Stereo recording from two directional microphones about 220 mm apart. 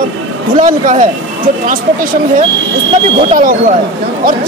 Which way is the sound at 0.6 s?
35° right (ahead or behind).